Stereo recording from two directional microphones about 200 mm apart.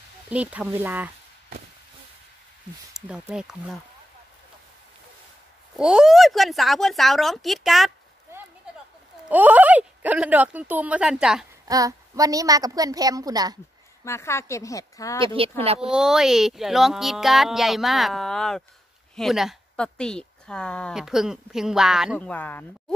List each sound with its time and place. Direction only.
0.3 s speech: 5° right (ahead or behind)
3.1 s a woman's voice: 5° right (ahead or behind)
5.8 s a woman's voice: 5° right (ahead or behind)
9.3 s speech: 10° right (ahead or behind)
11.6 s speech: 15° right (ahead or behind)
14.0 s speech: 15° left (ahead or behind)
15.2 s speech: 25° right (ahead or behind)
15.9 s a woman's voice: 5° right (ahead or behind)
22.3 s speech: 10° left (ahead or behind)